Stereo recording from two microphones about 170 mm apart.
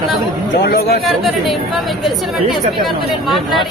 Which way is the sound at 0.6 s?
65° left (ahead or behind).